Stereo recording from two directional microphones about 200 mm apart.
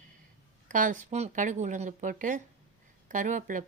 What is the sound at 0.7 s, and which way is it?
A woman's voice, 40° right (ahead or behind).